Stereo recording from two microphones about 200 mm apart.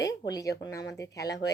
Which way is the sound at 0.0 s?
20° left (ahead or behind).